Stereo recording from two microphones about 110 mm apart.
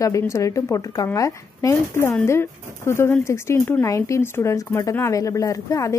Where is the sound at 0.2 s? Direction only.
30° left (ahead or behind).